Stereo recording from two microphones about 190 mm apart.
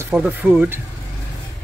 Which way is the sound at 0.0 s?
10° right (ahead or behind).